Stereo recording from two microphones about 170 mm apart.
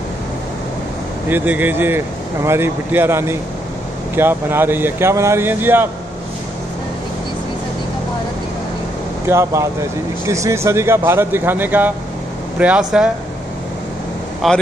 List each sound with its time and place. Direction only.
1.3 s speech: 10° right (ahead or behind)
9.3 s speech: 15° right (ahead or behind)
14.4 s speech: centre (ahead or behind)